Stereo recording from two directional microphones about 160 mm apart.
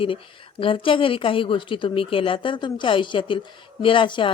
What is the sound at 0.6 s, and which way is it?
Speech, 35° left (ahead or behind).